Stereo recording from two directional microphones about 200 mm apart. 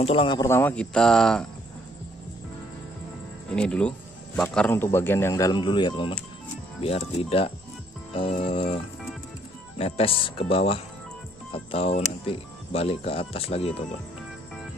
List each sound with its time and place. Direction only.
0.0 s speech: 25° left (ahead or behind)
0.5 s speech: 10° left (ahead or behind)
3.5 s speech: 5° left (ahead or behind); by 7.5 s 30° left (ahead or behind)
8.1 s music: 25° left (ahead or behind)
9.8 s speech: 30° left (ahead or behind)